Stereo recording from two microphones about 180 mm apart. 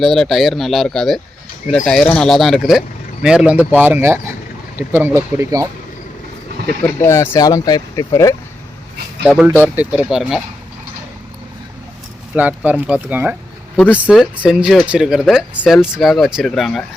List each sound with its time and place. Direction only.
0.0 s speech: centre (ahead or behind); by 5.6 s 15° right (ahead or behind)
7.0 s speech: 15° left (ahead or behind)
9.2 s speech: 5° right (ahead or behind)
12.4 s speech: 10° right (ahead or behind)